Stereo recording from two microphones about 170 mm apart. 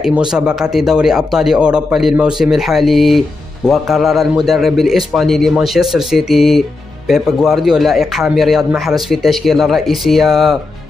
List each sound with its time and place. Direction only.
0.3 s a man's voice: 5° right (ahead or behind)